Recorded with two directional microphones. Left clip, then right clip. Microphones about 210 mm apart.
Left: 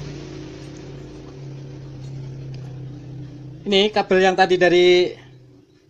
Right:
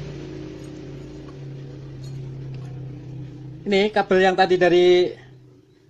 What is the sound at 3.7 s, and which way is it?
Speech, centre (ahead or behind).